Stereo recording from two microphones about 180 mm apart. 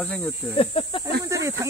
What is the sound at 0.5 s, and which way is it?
Speech, 30° left (ahead or behind).